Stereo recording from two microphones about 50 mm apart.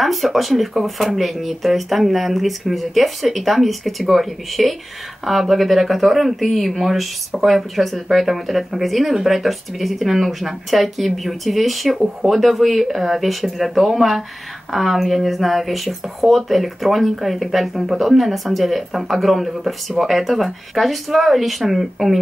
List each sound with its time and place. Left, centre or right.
0.0 s speech: centre